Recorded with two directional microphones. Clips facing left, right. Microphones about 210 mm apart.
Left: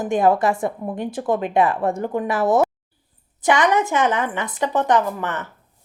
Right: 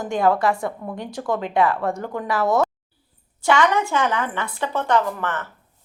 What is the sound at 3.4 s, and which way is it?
A woman's voice, 20° left (ahead or behind).